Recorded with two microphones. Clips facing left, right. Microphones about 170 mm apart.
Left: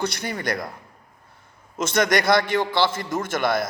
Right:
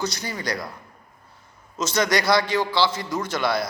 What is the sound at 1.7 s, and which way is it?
A man's voice, 55° left (ahead or behind).